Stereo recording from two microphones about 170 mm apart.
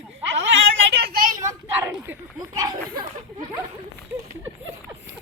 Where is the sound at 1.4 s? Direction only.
20° right (ahead or behind).